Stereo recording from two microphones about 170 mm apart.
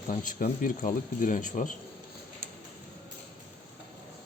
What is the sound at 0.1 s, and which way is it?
A man's voice, 50° left (ahead or behind).